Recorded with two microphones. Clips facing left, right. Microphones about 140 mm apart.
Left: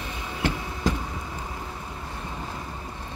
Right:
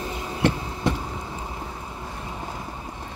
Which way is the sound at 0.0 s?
35° right (ahead or behind).